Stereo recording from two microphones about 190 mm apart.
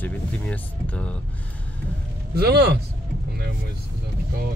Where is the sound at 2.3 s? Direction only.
55° right (ahead or behind).